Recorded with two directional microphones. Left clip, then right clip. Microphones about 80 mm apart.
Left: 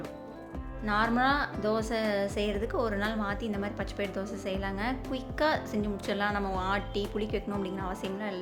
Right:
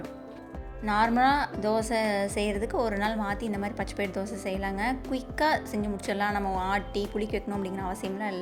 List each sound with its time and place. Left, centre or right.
0.9 s a woman's voice: right
6.4 s speech: centre
6.7 s a woman's voice: right